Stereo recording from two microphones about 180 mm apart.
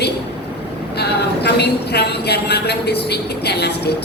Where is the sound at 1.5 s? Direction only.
65° left (ahead or behind).